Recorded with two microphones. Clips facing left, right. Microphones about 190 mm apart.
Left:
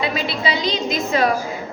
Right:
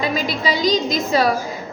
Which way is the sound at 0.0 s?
40° right (ahead or behind).